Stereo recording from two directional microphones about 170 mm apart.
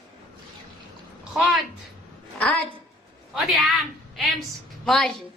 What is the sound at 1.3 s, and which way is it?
Speech, 5° right (ahead or behind).